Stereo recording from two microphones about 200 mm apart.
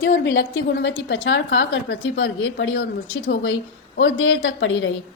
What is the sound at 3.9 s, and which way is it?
Speech, 65° left (ahead or behind).